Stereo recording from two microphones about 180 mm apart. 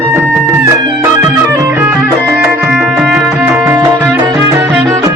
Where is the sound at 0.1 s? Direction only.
15° right (ahead or behind).